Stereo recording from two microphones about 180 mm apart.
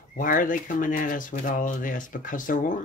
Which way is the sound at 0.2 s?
50° left (ahead or behind).